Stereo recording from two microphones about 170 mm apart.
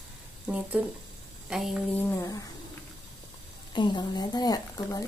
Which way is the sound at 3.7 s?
25° left (ahead or behind).